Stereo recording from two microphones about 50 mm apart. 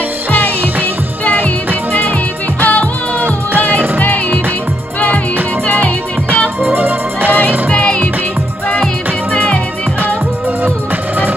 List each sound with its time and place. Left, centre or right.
1.2 s music: left
2.6 s music: left
6.6 s music: right
7.7 s music: left
9.3 s music: left